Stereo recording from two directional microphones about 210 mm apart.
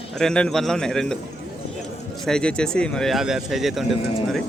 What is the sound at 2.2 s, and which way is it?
Speech, 5° left (ahead or behind).